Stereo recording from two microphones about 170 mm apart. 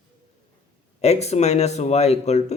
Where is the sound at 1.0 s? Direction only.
40° left (ahead or behind).